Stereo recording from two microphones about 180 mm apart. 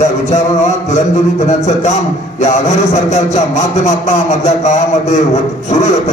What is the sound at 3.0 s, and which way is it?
A man's voice, 40° left (ahead or behind).